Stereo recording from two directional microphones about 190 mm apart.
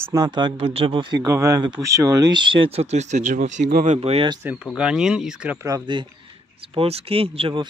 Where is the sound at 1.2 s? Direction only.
15° right (ahead or behind).